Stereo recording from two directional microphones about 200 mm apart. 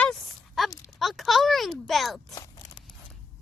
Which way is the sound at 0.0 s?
Centre (ahead or behind).